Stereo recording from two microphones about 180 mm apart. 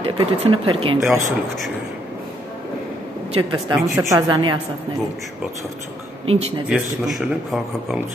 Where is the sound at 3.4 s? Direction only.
25° right (ahead or behind).